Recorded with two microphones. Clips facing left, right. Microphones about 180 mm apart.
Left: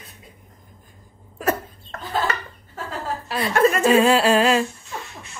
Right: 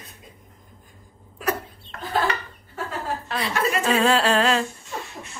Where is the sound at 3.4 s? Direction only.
50° left (ahead or behind).